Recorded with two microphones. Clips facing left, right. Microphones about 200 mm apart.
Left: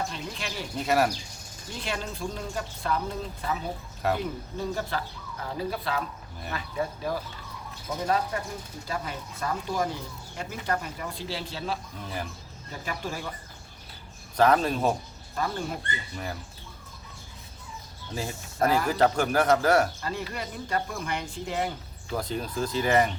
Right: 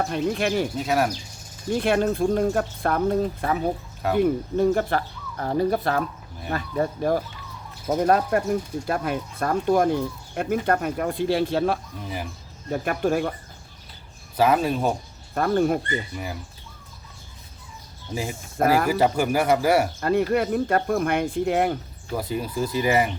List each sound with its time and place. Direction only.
0.0 s speech: 55° right (ahead or behind)
0.8 s speech: centre (ahead or behind)
1.7 s speech: 55° right (ahead or behind)
14.3 s speech: 5° right (ahead or behind)
15.4 s speech: 60° right (ahead or behind)
18.1 s speech: 15° right (ahead or behind)
20.0 s speech: 55° right (ahead or behind)
22.1 s speech: 10° right (ahead or behind)